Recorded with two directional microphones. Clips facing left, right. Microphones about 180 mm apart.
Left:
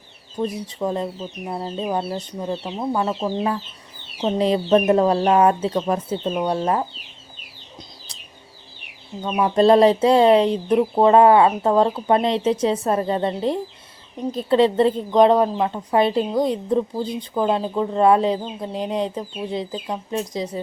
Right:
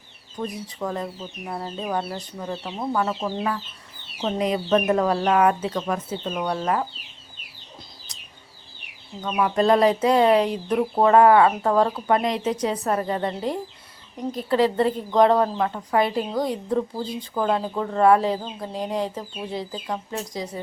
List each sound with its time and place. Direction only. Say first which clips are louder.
0.3 s speech: left 5 dB; 25° left (ahead or behind)
9.2 s speech: left 4 dB; 25° left (ahead or behind)